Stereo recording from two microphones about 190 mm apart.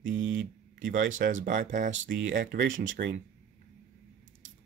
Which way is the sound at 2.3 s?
50° right (ahead or behind).